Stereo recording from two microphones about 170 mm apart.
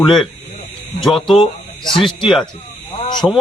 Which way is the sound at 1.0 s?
Centre (ahead or behind).